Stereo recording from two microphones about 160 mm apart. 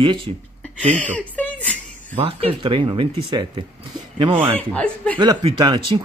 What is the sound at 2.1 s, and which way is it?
Speech, 35° right (ahead or behind).